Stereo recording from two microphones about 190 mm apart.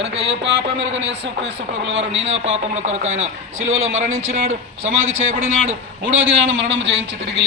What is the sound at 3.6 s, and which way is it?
Speech, 90° right.